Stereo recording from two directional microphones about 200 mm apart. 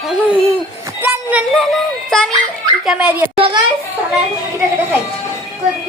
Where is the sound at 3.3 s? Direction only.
25° right (ahead or behind).